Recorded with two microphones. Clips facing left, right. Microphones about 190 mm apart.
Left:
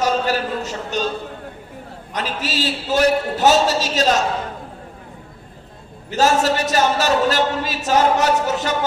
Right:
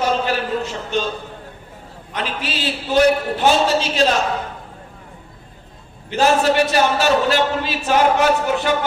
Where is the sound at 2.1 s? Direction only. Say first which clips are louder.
Left 1 dB; 40° left (ahead or behind).